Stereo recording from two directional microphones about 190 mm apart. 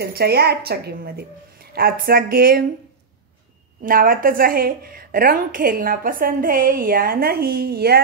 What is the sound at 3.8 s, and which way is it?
A woman's voice, 45° right (ahead or behind).